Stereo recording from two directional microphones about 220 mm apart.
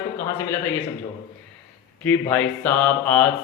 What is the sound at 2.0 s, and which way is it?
Mantra, 10° left (ahead or behind).